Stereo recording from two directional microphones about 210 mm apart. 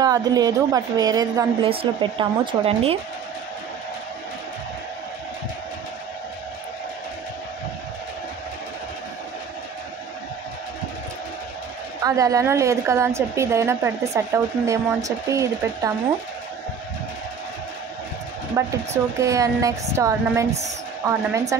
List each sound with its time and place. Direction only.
0.0 s speech: 15° right (ahead or behind)
12.0 s speech: 15° right (ahead or behind)
18.6 s speech: 15° right (ahead or behind)